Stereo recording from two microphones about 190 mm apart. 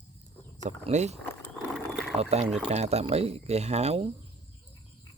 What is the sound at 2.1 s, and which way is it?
Speech, 35° right (ahead or behind).